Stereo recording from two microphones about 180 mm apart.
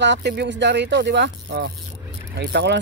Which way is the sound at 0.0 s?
75° right (ahead or behind).